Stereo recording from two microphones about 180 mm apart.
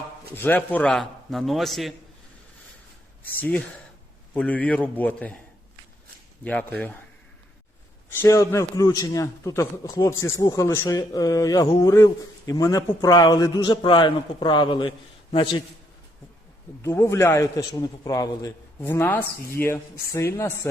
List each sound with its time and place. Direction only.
0.3 s a man's voice: 10° left (ahead or behind)
3.3 s a man's voice: 10° left (ahead or behind)
6.4 s a man's voice: 5° left (ahead or behind)
8.2 s a man's voice: 15° left (ahead or behind)
16.8 s a man's voice: 15° left (ahead or behind)